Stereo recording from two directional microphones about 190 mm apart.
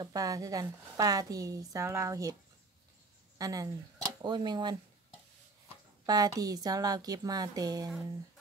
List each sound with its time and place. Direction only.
0.0 s a woman's voice: 20° right (ahead or behind)
3.3 s a woman's voice: 20° right (ahead or behind)
6.0 s a woman's voice: 20° right (ahead or behind)